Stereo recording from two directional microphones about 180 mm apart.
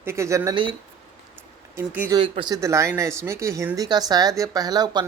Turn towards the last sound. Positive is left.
turn(degrees=-25)  # may be behind; listen again after turning